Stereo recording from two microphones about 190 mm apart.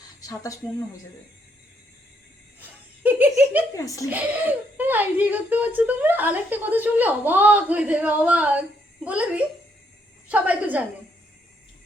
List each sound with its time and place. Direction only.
0.2 s speech: 20° left (ahead or behind)
2.6 s laughter: 10° right (ahead or behind)
3.8 s speech: 15° left (ahead or behind)
4.1 s speech: 10° right (ahead or behind)